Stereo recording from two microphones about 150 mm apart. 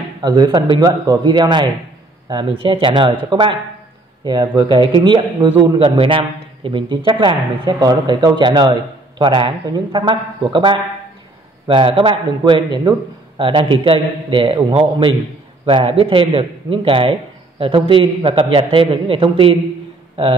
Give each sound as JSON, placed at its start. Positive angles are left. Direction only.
{"t": 0.2, "sound": "a man's voice", "side_deg": -25}